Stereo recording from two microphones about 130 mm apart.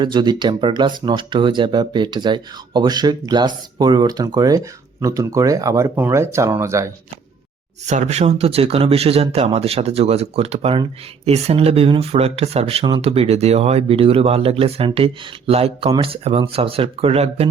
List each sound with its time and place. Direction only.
0.0 s speech: 35° right (ahead or behind)
7.9 s speech: 60° right (ahead or behind)